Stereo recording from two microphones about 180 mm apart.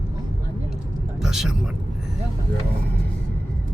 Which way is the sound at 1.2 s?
Centre (ahead or behind).